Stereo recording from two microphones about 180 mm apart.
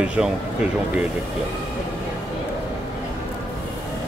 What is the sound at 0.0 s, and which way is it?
Speech, 5° right (ahead or behind).